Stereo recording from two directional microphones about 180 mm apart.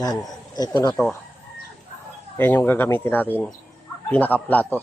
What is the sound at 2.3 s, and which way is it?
A man's voice, 10° left (ahead or behind).